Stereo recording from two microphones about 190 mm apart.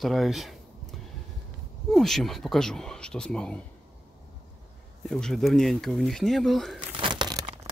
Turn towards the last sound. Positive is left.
turn(degrees=-25)  # may be behind; listen again after turning